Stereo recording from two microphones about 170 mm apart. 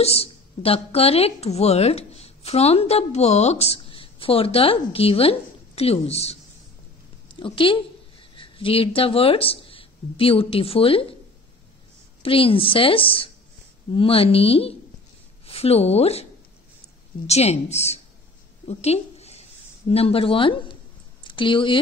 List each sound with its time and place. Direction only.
0.0 s a woman's voice: 35° left (ahead or behind)
7.3 s a woman's voice: 30° left (ahead or behind)
12.2 s a woman's voice: 30° left (ahead or behind)
17.3 s a woman's voice: 40° left (ahead or behind)
18.7 s a sound: 40° left (ahead or behind)
19.9 s a woman's voice: 35° left (ahead or behind)